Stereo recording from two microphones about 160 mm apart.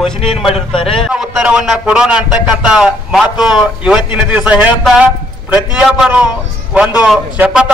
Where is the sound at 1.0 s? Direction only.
5° right (ahead or behind).